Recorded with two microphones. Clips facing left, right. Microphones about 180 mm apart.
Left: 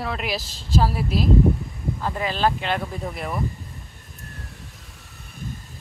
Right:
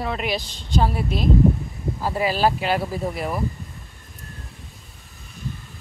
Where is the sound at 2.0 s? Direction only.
10° right (ahead or behind).